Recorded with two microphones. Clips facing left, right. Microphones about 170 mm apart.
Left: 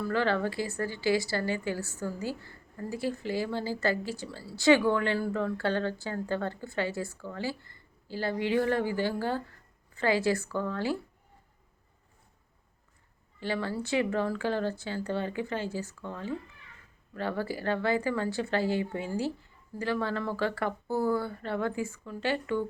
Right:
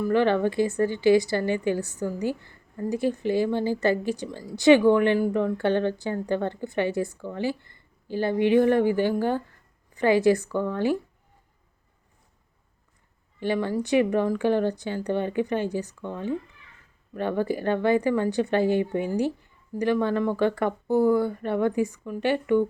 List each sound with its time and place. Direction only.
0.0 s a woman's voice: 20° right (ahead or behind)
13.4 s a woman's voice: 15° right (ahead or behind)